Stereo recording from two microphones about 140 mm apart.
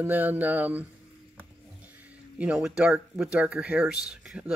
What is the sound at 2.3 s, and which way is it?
Speech, 5° right (ahead or behind).